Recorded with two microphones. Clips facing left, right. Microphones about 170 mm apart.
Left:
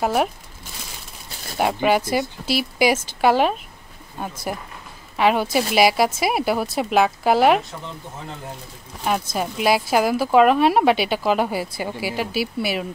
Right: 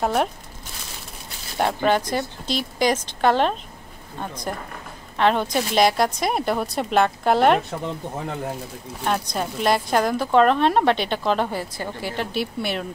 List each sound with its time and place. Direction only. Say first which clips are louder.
0.0 s a woman's voice: left 1 dB; 5° left (ahead or behind)
1.6 s a woman's voice: left 1 dB; 5° left (ahead or behind)
9.0 s a woman's voice: left 1 dB; 5° left (ahead or behind)